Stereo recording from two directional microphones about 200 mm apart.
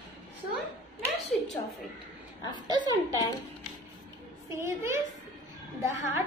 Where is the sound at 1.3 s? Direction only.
Centre (ahead or behind).